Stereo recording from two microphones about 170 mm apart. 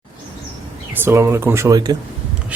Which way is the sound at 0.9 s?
15° right (ahead or behind).